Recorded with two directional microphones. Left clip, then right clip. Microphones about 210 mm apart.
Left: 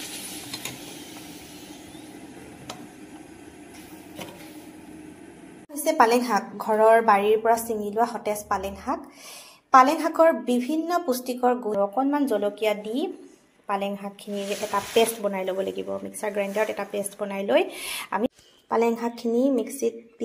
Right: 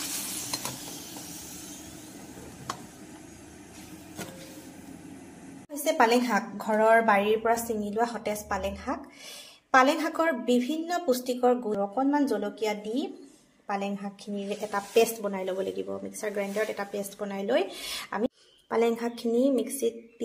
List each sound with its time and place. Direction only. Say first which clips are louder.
5.9 s speech: left 3 dB; 5° left (ahead or behind)